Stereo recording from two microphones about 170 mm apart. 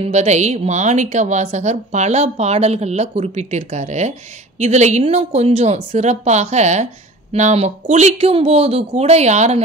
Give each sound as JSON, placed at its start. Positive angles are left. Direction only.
{"t": 0.0, "sound": "a woman's voice", "side_deg": -40}